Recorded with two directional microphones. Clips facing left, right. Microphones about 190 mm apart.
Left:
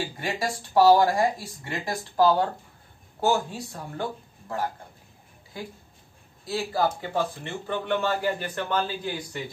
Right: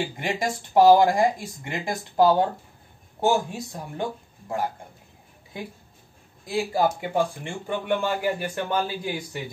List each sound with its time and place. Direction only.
0.0 s a man's voice: 20° right (ahead or behind)